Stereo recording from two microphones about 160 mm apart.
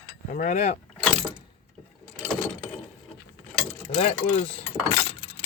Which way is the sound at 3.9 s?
40° left (ahead or behind).